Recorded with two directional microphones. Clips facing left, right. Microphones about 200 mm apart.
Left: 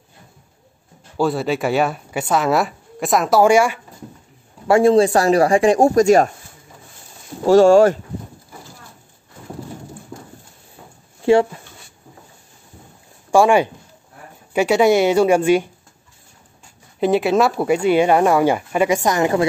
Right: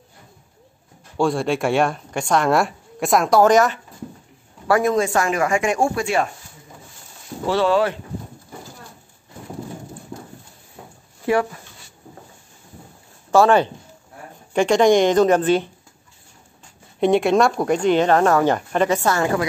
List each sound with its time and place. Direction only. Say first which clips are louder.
1.1 s speech: left 1 dB; 5° left (ahead or behind)
4.6 s speech: left 6 dB; 25° left (ahead or behind)
7.4 s speech: left 8 dB; 45° left (ahead or behind)
13.3 s speech: left 1 dB; 10° left (ahead or behind)
17.0 s speech: even; 5° left (ahead or behind); by 19.4 s 20° left (ahead or behind)